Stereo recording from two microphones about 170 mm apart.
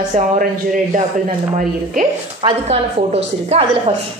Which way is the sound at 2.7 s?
40° right (ahead or behind).